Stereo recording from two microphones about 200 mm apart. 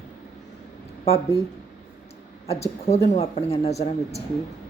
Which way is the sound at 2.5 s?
30° left (ahead or behind).